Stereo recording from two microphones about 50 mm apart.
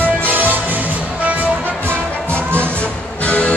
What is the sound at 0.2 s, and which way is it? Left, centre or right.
Music, right.